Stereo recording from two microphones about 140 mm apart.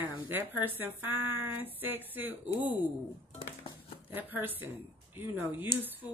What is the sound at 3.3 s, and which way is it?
Music, 40° left (ahead or behind).